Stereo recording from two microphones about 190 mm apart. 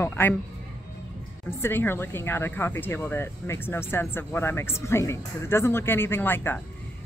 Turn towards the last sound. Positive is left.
turn(degrees=10)  # may be behind; listen again after turning